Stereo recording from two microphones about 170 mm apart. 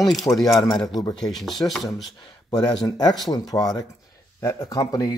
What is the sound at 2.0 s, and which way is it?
Speech, 25° left (ahead or behind).